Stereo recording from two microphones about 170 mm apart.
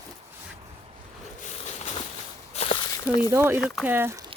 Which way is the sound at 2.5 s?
35° left (ahead or behind).